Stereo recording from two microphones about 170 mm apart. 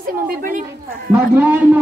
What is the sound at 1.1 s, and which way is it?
Speech, 10° right (ahead or behind).